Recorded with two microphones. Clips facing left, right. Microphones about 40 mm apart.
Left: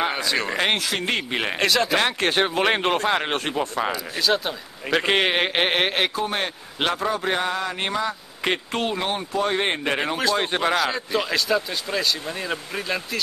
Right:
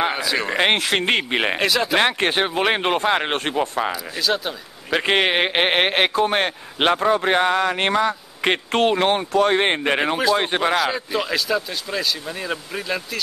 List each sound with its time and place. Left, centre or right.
0.0 s speech: centre
0.5 s speech: right
0.7 s speech: right
1.3 s speech: right
1.6 s speech: centre
2.0 s speech: right
2.3 s speech: centre
3.8 s speech: centre
5.1 s speech: centre; by 8.1 s right
8.1 s speech: right
8.7 s speech: right; by 10.7 s centre
10.7 s speech: centre